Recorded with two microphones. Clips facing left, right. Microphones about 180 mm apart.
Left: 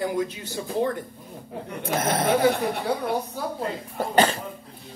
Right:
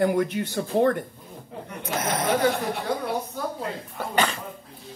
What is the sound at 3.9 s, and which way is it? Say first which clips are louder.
Speech: left 5 dB; 40° left (ahead or behind).